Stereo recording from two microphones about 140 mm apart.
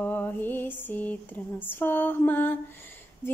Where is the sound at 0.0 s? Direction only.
15° left (ahead or behind).